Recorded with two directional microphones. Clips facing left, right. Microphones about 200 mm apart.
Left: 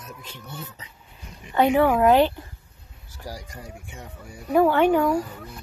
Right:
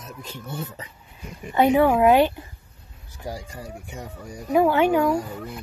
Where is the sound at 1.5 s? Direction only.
10° right (ahead or behind).